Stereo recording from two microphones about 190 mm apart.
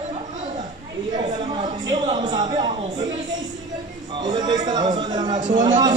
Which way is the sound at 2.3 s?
20° right (ahead or behind).